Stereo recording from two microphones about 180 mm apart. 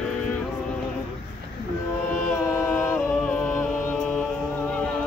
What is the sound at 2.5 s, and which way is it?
A capella, 10° left (ahead or behind).